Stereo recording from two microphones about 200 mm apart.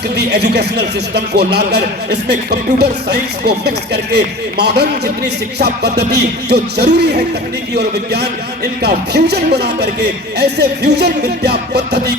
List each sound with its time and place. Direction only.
0.2 s a man's voice: 55° right (ahead or behind)